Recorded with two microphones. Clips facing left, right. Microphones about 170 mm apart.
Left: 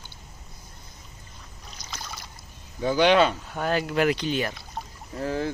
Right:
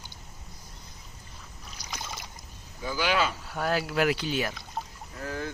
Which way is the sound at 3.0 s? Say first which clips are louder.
Left 8 dB; 30° left (ahead or behind).